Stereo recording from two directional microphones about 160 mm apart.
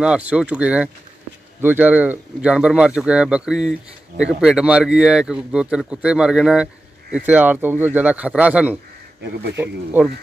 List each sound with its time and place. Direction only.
0.0 s speech: 5° right (ahead or behind)
9.2 s speech: 90° right